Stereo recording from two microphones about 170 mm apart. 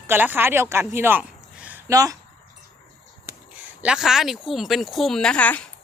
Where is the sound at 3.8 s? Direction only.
5° right (ahead or behind).